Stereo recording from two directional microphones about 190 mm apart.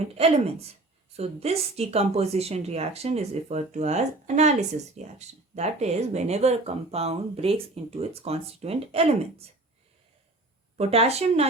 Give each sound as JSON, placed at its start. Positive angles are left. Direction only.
{"t": 0.2, "sound": "speech", "side_deg": -30}
{"t": 10.8, "sound": "speech", "side_deg": -30}